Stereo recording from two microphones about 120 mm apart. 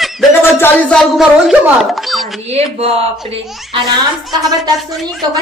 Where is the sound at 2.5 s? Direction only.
60° right (ahead or behind).